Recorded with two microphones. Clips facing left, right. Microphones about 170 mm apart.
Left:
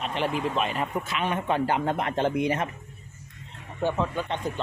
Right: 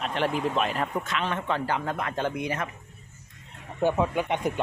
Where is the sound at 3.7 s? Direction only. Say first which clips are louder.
Right 3 dB; 10° right (ahead or behind).